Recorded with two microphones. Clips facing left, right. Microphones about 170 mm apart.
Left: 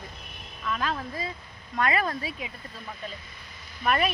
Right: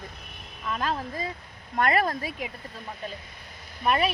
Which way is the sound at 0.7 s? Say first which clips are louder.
Right 1 dB; 35° right (ahead or behind).